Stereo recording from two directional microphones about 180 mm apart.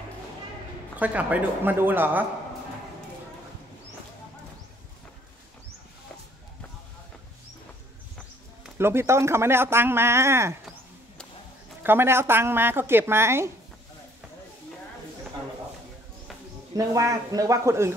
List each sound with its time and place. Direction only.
0.9 s speech: 10° right (ahead or behind)
8.6 s speech: 15° right (ahead or behind)
11.8 s speech: 10° right (ahead or behind)
16.7 s speech: 15° right (ahead or behind)